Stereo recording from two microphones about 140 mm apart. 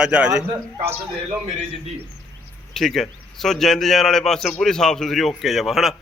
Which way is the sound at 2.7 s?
Centre (ahead or behind).